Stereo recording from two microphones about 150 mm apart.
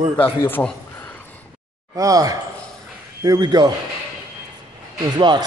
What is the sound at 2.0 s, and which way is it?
A man's voice, 25° right (ahead or behind).